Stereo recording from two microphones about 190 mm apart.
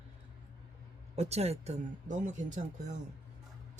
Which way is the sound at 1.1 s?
35° right (ahead or behind).